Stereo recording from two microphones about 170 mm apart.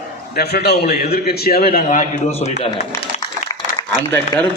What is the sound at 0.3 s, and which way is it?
A man's voice, 70° left (ahead or behind).